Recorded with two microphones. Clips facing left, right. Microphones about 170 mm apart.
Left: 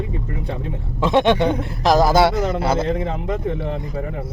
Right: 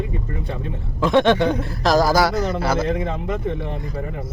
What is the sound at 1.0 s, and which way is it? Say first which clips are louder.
A man's voice: even; 15° left (ahead or behind).